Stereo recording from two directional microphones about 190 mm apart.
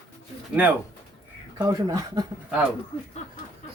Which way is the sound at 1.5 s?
20° right (ahead or behind).